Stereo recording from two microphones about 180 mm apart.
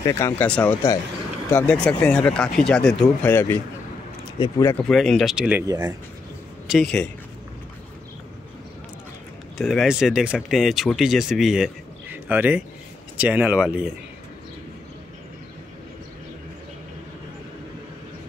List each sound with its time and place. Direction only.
0.0 s speech: 15° left (ahead or behind); by 5.7 s 5° right (ahead or behind)
5.7 s speech: 20° right (ahead or behind)
6.7 s speech: 5° left (ahead or behind)
9.6 s speech: centre (ahead or behind)